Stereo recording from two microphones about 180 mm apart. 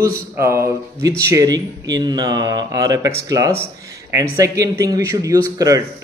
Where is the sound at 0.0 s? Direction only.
15° right (ahead or behind).